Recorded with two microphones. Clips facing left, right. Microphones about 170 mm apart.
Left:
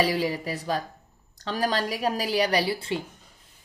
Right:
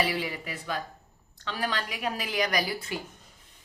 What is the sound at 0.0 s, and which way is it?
A woman's voice, 40° left (ahead or behind).